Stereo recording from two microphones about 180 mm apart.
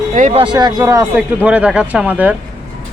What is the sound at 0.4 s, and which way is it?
Speech, 25° right (ahead or behind).